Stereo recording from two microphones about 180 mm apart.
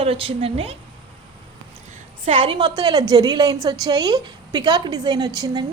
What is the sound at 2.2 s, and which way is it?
A woman's voice, 30° right (ahead or behind).